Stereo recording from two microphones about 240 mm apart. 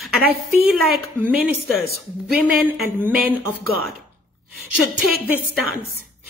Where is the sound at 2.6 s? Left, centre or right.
Centre.